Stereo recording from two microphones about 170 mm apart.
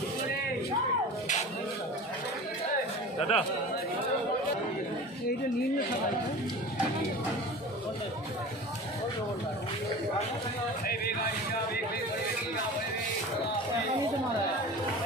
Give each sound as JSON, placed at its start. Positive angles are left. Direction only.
{"t": 3.2, "sound": "speech", "side_deg": 35}